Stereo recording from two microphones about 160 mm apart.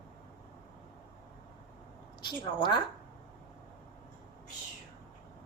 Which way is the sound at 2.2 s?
30° left (ahead or behind).